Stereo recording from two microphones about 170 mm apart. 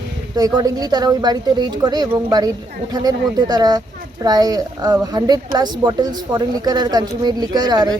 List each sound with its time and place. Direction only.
0.3 s speech: 20° right (ahead or behind)